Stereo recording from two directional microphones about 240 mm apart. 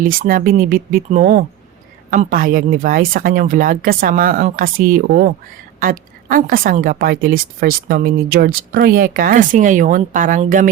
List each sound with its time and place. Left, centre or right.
0.2 s a woman's voice: right